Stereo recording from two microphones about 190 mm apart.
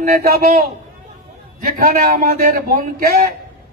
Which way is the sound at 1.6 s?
45° right (ahead or behind).